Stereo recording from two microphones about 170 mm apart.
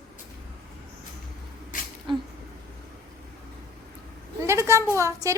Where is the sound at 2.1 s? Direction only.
30° right (ahead or behind).